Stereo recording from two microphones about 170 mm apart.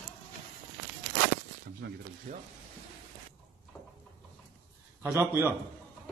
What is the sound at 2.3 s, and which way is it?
Speech, 50° right (ahead or behind).